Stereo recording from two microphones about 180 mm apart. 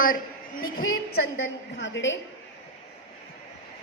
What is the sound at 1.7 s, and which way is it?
Speech, 90° left.